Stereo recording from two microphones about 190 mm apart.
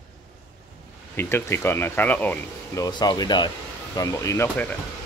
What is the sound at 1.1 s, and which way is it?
Speech, 10° left (ahead or behind).